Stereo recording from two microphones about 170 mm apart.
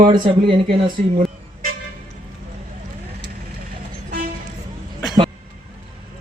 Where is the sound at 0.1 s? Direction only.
30° right (ahead or behind).